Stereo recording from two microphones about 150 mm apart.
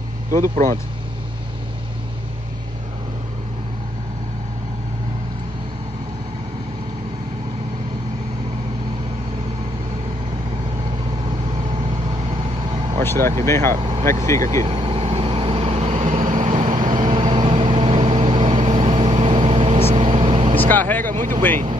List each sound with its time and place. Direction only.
0.3 s speech: 60° right (ahead or behind)
13.0 s speech: 15° left (ahead or behind)
13.7 s speech: 30° right (ahead or behind)
14.4 s speech: 55° right (ahead or behind)
14.7 s vehicle: 35° right (ahead or behind); by 16.5 s 55° right (ahead or behind)
16.5 s vehicle: 30° right (ahead or behind)
20.6 s vehicle: 10° left (ahead or behind)
21.1 s vehicle: 60° right (ahead or behind)